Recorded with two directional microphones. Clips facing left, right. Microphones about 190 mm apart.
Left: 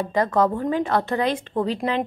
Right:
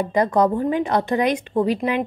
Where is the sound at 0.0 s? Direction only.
15° right (ahead or behind).